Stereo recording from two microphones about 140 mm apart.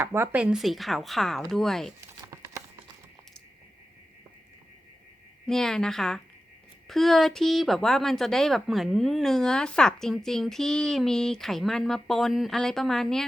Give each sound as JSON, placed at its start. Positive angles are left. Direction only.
{"t": 0.0, "sound": "speech", "side_deg": -15}
{"t": 2.2, "sound": "a sound", "side_deg": -20}
{"t": 5.5, "sound": "speech", "side_deg": 5}